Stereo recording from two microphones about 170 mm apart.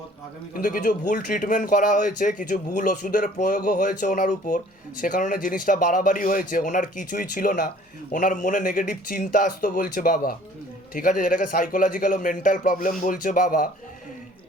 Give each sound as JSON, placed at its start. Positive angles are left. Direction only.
{"t": 0.5, "sound": "speech", "side_deg": 55}